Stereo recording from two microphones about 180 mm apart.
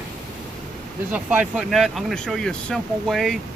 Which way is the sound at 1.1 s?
5° right (ahead or behind).